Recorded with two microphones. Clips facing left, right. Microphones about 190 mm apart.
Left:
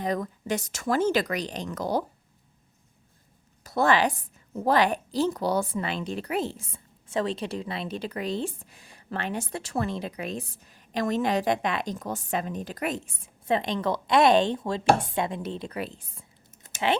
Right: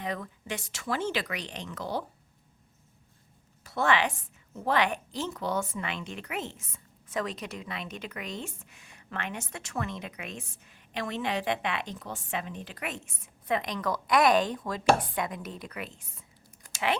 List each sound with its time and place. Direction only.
0.0 s a woman's voice: 40° left (ahead or behind)
3.6 s a woman's voice: 40° left (ahead or behind)
16.6 s typing: 25° left (ahead or behind)